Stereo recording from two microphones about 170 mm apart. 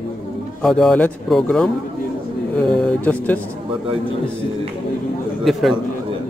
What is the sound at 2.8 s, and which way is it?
Speech, 10° left (ahead or behind).